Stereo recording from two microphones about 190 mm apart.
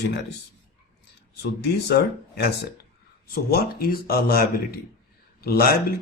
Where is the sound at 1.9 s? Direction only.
55° left (ahead or behind).